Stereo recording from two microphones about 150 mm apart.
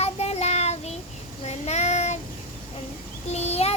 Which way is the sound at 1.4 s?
45° left (ahead or behind).